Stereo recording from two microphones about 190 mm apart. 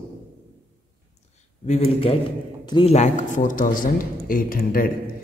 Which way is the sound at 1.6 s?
35° left (ahead or behind).